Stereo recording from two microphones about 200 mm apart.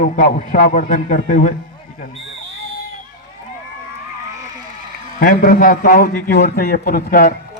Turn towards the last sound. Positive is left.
turn(degrees=50)  # may be behind; listen again after turning